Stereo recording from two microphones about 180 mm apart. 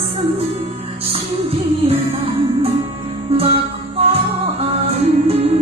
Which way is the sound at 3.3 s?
30° right (ahead or behind).